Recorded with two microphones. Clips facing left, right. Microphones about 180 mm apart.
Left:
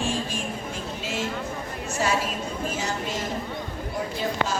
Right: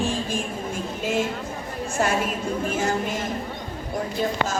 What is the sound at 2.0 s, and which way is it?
Speech, 50° right (ahead or behind).